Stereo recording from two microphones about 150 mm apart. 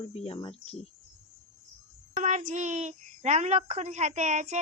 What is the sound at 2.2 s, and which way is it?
A woman's voice, 55° right (ahead or behind).